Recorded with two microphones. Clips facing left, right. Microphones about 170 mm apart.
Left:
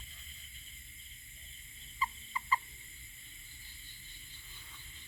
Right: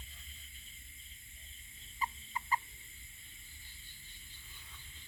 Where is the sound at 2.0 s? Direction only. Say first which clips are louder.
Left 1 dB; 50° right (ahead or behind).